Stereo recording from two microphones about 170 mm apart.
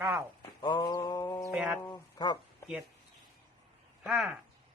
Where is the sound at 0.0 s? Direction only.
20° right (ahead or behind).